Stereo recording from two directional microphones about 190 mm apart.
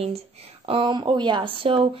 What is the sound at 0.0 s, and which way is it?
Speech, 30° right (ahead or behind).